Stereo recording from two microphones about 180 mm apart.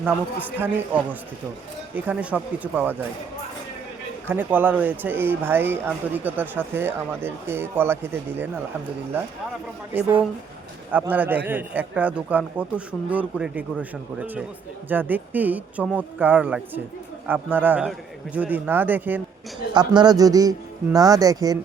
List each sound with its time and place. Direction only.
0.0 s speech: 10° right (ahead or behind)
2.0 s speech: 10° right (ahead or behind)
4.3 s speech: 10° right (ahead or behind)
9.9 s speech: 10° right (ahead or behind)
19.7 s speech: 25° right (ahead or behind)